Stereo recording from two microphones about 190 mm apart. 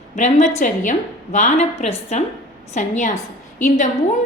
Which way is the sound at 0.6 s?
45° left (ahead or behind).